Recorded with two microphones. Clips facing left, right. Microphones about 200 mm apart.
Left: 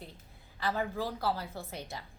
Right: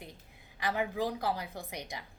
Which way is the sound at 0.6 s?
15° right (ahead or behind).